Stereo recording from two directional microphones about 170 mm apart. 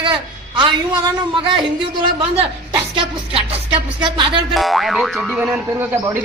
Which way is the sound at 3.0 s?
35° right (ahead or behind).